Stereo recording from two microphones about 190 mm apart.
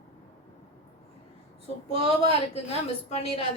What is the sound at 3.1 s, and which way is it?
Speech, 30° left (ahead or behind).